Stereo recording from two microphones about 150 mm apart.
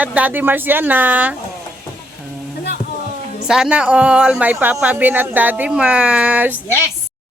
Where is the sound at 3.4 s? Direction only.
5° right (ahead or behind).